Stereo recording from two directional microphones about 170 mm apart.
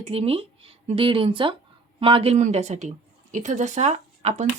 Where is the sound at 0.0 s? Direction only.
35° right (ahead or behind).